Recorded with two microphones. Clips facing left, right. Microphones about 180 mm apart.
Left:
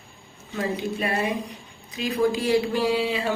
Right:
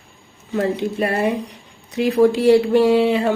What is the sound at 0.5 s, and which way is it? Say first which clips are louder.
Mantra: right 7 dB; 60° right (ahead or behind).